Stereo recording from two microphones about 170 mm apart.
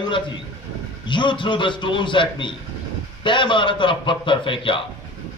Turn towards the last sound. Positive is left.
turn(degrees=30)  # may be behind; listen again after turning